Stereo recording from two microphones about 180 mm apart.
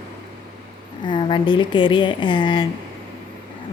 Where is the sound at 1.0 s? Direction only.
25° left (ahead or behind).